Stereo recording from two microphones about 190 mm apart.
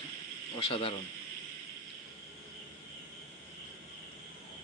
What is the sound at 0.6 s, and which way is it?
Speech, 30° left (ahead or behind).